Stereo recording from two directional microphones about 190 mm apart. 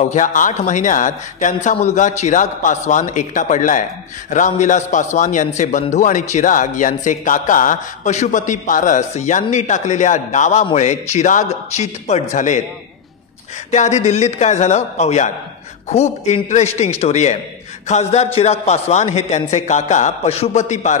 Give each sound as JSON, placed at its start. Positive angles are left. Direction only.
{"t": 0.0, "sound": "a man's voice", "side_deg": 40}
{"t": 13.7, "sound": "a man's voice", "side_deg": 40}